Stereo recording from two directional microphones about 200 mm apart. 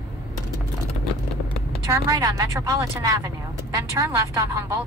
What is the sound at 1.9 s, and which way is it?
Speech, 15° right (ahead or behind).